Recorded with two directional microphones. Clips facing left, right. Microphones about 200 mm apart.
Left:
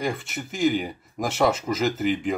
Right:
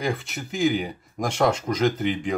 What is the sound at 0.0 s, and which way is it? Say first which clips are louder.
Speech: right 1 dB; centre (ahead or behind).